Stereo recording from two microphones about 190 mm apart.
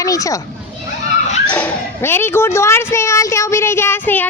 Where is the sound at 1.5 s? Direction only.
10° left (ahead or behind).